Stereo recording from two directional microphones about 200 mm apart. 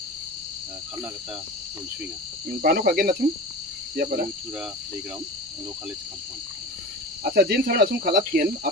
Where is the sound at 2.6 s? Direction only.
50° right (ahead or behind).